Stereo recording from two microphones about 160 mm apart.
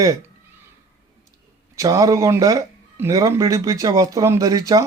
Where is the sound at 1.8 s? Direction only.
20° right (ahead or behind).